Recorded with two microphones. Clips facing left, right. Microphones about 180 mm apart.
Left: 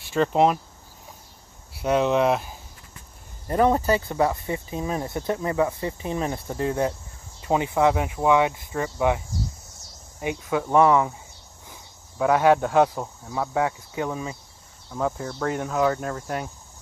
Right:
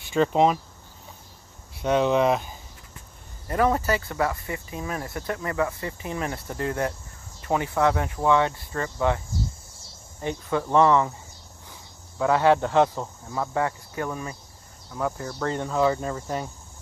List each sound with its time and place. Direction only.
0.0 s speech: centre (ahead or behind)
1.7 s speech: 5° left (ahead or behind)
3.4 s speech: 20° left (ahead or behind)
10.2 s speech: 10° left (ahead or behind)